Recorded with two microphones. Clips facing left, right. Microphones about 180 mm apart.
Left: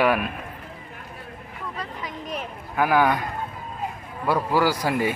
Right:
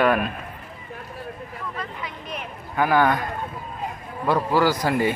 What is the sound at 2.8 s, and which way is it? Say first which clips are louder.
Speech: right 1 dB; 10° left (ahead or behind).